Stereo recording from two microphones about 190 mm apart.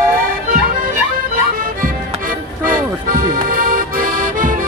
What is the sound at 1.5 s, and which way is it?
Music, 45° right (ahead or behind).